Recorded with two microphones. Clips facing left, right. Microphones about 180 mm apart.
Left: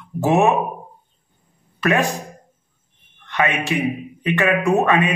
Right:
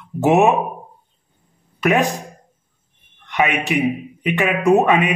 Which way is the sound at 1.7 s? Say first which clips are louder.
Right 2 dB; 15° right (ahead or behind).